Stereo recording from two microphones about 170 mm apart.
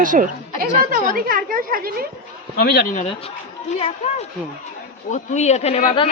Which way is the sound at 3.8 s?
40° left (ahead or behind).